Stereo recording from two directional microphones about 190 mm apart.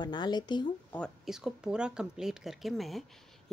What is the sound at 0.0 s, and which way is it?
Speech, 25° left (ahead or behind).